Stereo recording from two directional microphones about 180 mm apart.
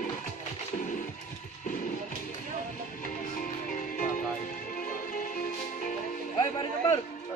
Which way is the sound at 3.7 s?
45° left (ahead or behind).